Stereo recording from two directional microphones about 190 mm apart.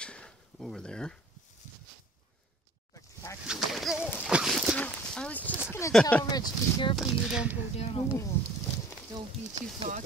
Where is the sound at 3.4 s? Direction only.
Centre (ahead or behind).